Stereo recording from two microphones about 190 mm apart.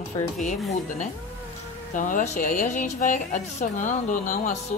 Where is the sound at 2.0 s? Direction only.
45° left (ahead or behind).